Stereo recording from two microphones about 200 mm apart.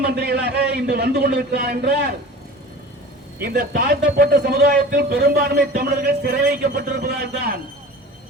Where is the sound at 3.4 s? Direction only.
50° right (ahead or behind).